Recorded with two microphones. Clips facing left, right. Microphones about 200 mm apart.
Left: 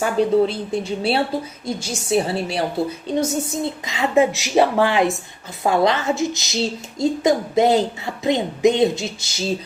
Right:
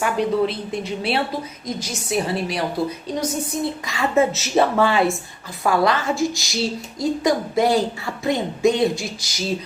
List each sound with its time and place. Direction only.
0.0 s a woman's voice: 30° left (ahead or behind)